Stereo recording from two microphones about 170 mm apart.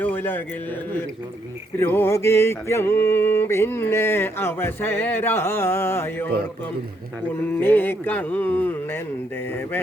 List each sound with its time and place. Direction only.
0.0 s a man's voice: 10° left (ahead or behind)
1.8 s mantra: 15° left (ahead or behind)
7.3 s mantra: 10° left (ahead or behind)